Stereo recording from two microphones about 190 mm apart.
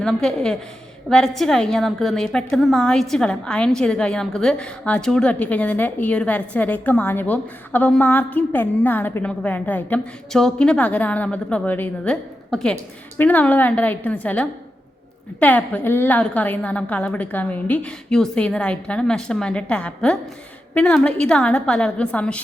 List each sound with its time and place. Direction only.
0.0 s a woman's voice: 5° left (ahead or behind)